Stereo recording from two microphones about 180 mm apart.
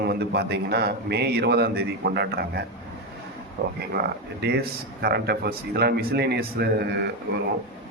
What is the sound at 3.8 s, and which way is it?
Speech, 60° right (ahead or behind).